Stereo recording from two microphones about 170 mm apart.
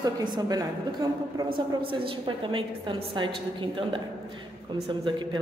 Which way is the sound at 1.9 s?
30° right (ahead or behind).